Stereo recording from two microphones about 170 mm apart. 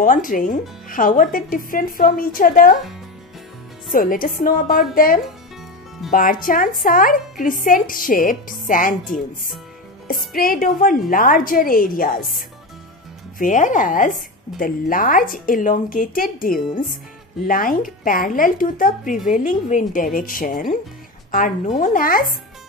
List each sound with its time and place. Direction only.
0.0 s speech: 50° left (ahead or behind)
3.9 s a woman's voice: 55° left (ahead or behind)
10.3 s a woman's voice: 60° left (ahead or behind)